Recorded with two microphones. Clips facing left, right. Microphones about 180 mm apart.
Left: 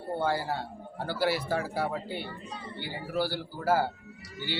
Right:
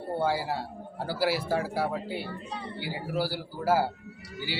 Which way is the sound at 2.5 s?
65° right (ahead or behind).